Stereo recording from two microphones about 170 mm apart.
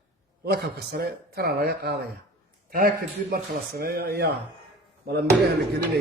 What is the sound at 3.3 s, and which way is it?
A man's voice, 60° right (ahead or behind).